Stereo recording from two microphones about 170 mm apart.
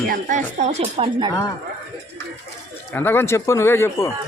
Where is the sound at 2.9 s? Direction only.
10° left (ahead or behind).